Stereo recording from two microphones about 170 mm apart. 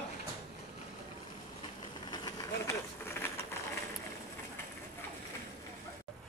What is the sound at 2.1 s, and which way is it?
Vehicle, 20° left (ahead or behind).